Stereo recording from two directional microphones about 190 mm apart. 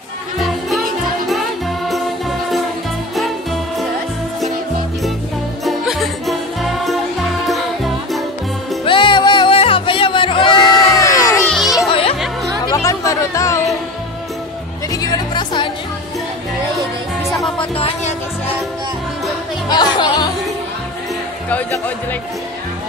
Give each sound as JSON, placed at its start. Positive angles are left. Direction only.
{"t": 0.4, "sound": "music", "side_deg": 0}
{"t": 1.9, "sound": "music", "side_deg": 0}
{"t": 5.7, "sound": "music", "side_deg": 0}
{"t": 8.8, "sound": "music", "side_deg": 25}
{"t": 10.9, "sound": "crowd", "side_deg": 15}
{"t": 11.4, "sound": "music", "side_deg": 0}
{"t": 11.9, "sound": "music", "side_deg": 30}
{"t": 12.6, "sound": "music", "side_deg": 15}
{"t": 14.9, "sound": "music", "side_deg": 20}
{"t": 17.6, "sound": "music", "side_deg": 30}
{"t": 19.7, "sound": "music", "side_deg": 20}
{"t": 21.5, "sound": "speech", "side_deg": 10}